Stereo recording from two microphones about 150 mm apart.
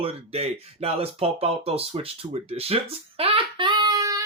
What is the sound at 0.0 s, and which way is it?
Speech, 40° right (ahead or behind).